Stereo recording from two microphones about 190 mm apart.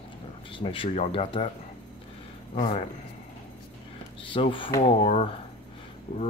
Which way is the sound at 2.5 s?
35° left (ahead or behind).